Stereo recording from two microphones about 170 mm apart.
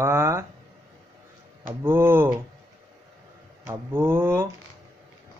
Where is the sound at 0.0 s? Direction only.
15° right (ahead or behind).